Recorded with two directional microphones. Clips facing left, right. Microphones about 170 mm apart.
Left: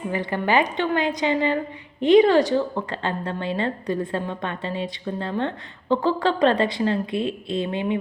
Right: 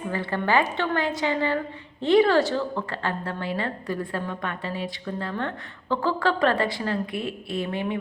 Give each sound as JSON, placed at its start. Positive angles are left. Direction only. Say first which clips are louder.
{"t": 0.1, "sound": "a woman's voice", "louder": "left 2 dB", "side_deg": 15}